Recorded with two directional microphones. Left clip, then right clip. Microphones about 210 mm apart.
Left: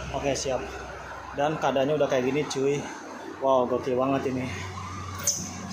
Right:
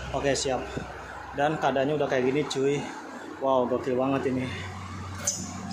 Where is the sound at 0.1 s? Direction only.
20° right (ahead or behind).